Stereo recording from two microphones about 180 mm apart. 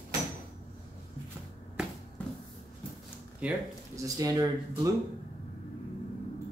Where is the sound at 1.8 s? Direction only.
5° right (ahead or behind).